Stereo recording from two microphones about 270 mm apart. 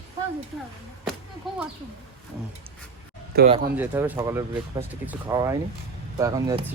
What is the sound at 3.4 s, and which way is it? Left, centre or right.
Speech, right.